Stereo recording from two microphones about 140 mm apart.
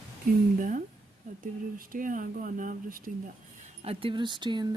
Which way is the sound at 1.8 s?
75° right (ahead or behind).